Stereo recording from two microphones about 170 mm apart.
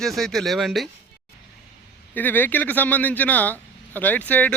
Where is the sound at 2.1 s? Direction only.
10° left (ahead or behind).